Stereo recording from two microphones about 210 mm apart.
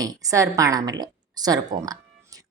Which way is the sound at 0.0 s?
15° right (ahead or behind).